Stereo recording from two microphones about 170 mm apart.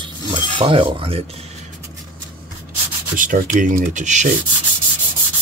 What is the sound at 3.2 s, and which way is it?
Speech, 50° right (ahead or behind).